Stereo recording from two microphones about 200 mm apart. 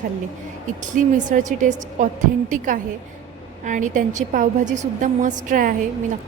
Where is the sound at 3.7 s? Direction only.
40° right (ahead or behind).